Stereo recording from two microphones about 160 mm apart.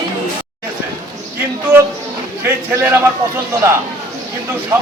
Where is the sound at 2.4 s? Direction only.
15° right (ahead or behind).